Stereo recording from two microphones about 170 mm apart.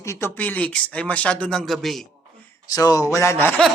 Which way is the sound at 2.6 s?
20° left (ahead or behind).